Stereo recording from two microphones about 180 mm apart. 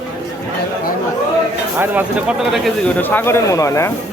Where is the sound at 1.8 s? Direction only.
10° right (ahead or behind).